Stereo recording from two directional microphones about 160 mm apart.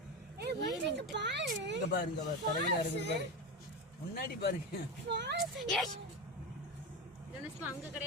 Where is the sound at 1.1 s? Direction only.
90° right.